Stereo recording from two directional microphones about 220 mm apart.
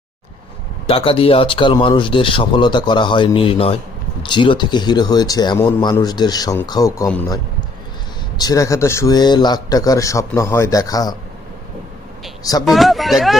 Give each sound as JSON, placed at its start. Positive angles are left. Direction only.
{"t": 0.9, "sound": "speech", "side_deg": 25}
{"t": 8.4, "sound": "speech", "side_deg": 15}
{"t": 12.4, "sound": "speech", "side_deg": 15}
{"t": 12.6, "sound": "speech", "side_deg": 0}